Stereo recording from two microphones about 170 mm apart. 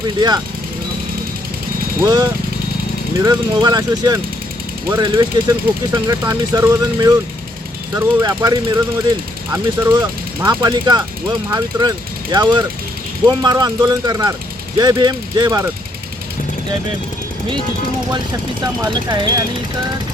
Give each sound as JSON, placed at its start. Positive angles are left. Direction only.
{"t": 2.0, "sound": "speech", "side_deg": -20}
{"t": 18.6, "sound": "speech", "side_deg": -25}